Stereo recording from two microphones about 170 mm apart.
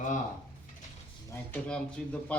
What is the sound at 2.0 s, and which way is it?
Speech, 5° left (ahead or behind).